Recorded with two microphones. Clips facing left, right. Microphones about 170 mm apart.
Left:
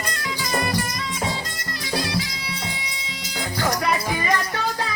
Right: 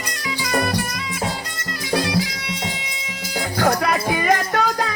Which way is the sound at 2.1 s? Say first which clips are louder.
Right 5 dB; 20° right (ahead or behind).